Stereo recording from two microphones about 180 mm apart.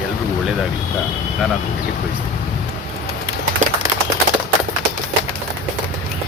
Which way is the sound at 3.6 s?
45° right (ahead or behind).